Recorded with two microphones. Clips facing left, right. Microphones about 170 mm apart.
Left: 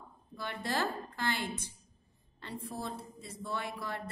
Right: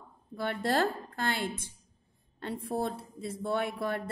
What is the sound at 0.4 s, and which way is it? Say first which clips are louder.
A woman's voice: right 6 dB; 50° right (ahead or behind).